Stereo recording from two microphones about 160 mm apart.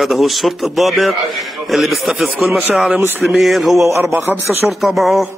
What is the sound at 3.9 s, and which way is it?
Speech, 15° right (ahead or behind).